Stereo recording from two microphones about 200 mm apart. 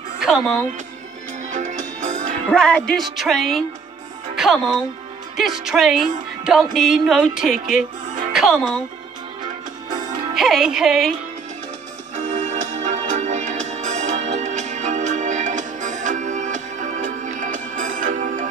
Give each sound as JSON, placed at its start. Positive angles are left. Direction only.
{"t": 0.2, "sound": "music", "side_deg": 0}
{"t": 1.5, "sound": "music", "side_deg": -40}
{"t": 2.5, "sound": "music", "side_deg": 5}
{"t": 4.4, "sound": "speech", "side_deg": 0}
{"t": 5.4, "sound": "music", "side_deg": 0}
{"t": 8.3, "sound": "speech", "side_deg": 0}
{"t": 10.3, "sound": "music", "side_deg": 0}
{"t": 12.2, "sound": "music", "side_deg": -35}